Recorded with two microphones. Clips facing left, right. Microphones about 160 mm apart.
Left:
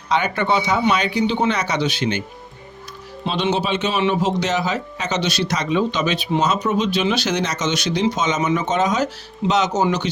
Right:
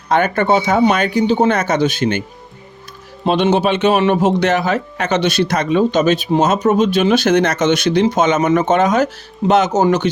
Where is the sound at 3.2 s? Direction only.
55° right (ahead or behind).